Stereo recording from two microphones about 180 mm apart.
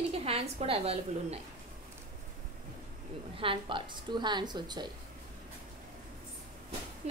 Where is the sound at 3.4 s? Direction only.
30° right (ahead or behind).